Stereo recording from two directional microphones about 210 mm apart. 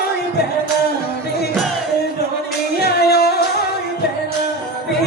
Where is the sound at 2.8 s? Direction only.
50° left (ahead or behind).